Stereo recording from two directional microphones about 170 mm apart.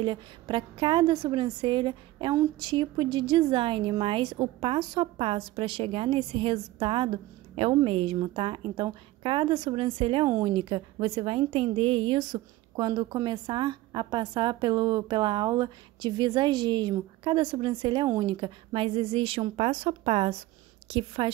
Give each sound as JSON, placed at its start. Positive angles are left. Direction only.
{"t": 0.0, "sound": "a woman's voice", "side_deg": -30}